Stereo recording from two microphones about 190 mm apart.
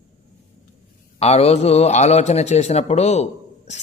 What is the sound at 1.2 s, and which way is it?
A man's voice, 30° left (ahead or behind).